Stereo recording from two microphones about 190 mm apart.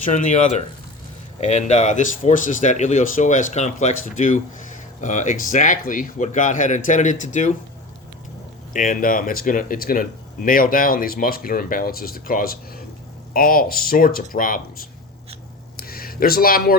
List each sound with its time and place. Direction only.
0.0 s speech: 40° left (ahead or behind)
8.7 s speech: 45° left (ahead or behind)
15.8 s a sound: 50° left (ahead or behind)